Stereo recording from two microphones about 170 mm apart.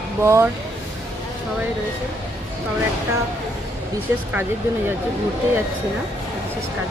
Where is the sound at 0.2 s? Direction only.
15° right (ahead or behind).